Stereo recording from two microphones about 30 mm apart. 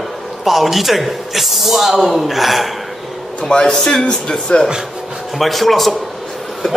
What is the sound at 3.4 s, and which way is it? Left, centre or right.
Speech, left.